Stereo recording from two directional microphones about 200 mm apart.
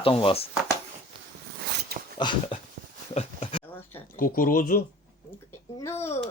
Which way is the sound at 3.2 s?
30° left (ahead or behind).